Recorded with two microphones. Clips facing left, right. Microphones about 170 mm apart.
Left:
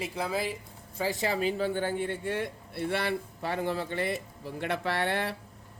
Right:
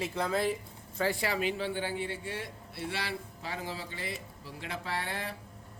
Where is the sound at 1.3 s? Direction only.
40° left (ahead or behind); by 5.3 s 70° left (ahead or behind).